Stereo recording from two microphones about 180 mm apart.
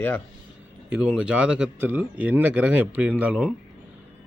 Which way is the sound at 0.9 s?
5° right (ahead or behind).